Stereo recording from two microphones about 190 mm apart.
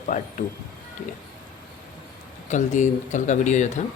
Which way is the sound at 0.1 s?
40° left (ahead or behind).